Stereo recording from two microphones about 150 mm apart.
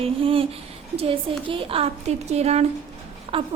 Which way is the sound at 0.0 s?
35° right (ahead or behind).